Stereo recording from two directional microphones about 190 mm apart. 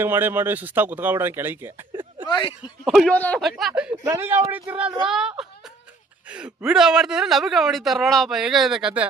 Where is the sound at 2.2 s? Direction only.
25° left (ahead or behind).